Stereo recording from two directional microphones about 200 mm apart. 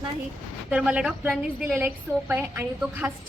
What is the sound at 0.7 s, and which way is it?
A woman's voice, 5° right (ahead or behind).